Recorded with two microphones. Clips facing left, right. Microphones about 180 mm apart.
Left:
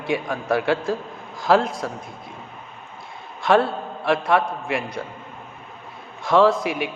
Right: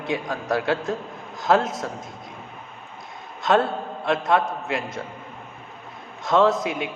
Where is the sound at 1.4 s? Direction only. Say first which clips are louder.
Left 2 dB; 20° right (ahead or behind).